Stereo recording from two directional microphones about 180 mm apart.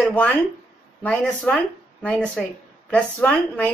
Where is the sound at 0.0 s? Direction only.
5° left (ahead or behind).